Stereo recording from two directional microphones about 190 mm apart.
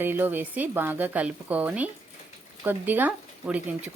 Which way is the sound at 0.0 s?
10° right (ahead or behind).